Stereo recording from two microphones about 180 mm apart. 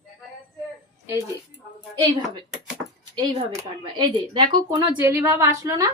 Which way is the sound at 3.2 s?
25° right (ahead or behind).